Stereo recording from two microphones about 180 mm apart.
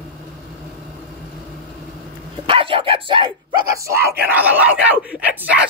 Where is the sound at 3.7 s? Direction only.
15° right (ahead or behind).